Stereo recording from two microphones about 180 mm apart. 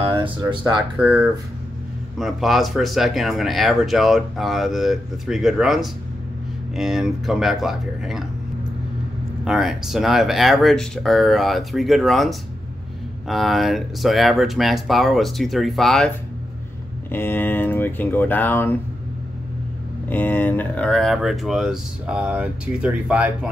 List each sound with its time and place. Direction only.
0.1 s speech: 25° right (ahead or behind)
0.9 s speech: 5° right (ahead or behind)
9.4 s speech: centre (ahead or behind)
17.1 s speech: 10° left (ahead or behind)
20.1 s speech: 10° left (ahead or behind); by 23.5 s 5° right (ahead or behind)